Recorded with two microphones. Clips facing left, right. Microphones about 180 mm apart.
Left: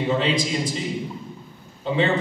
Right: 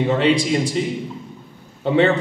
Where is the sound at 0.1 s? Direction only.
65° right (ahead or behind).